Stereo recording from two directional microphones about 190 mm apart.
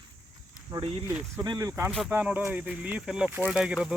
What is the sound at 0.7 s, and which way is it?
Speech, 30° right (ahead or behind).